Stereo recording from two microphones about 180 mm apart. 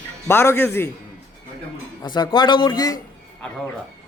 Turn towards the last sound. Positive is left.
turn(degrees=20)  # may be behind; listen again after turning